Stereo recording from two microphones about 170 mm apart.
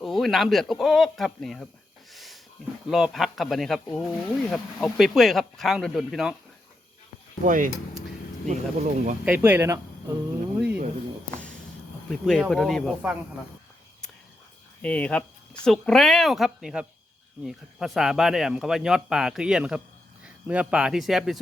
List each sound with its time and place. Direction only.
0.0 s speech: centre (ahead or behind)
2.1 s a sound: centre (ahead or behind)
2.9 s speech: centre (ahead or behind)
7.4 s speech: 50° right (ahead or behind)
9.2 s speech: 10° right (ahead or behind)
12.2 s speech: centre (ahead or behind)
14.8 s speech: 10° left (ahead or behind)